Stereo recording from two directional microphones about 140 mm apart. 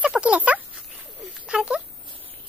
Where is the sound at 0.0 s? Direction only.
10° right (ahead or behind).